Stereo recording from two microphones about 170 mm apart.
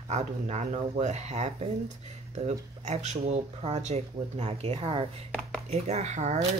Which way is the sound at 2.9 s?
40° right (ahead or behind).